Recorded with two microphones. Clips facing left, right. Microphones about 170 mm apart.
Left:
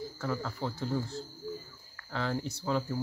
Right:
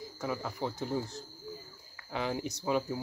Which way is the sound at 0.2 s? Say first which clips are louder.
Even; 15° right (ahead or behind).